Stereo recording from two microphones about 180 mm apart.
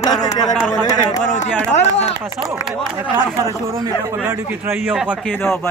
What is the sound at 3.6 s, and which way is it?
A man's voice, 15° right (ahead or behind).